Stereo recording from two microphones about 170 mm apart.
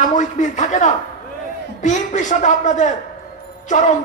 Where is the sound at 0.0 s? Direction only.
50° left (ahead or behind).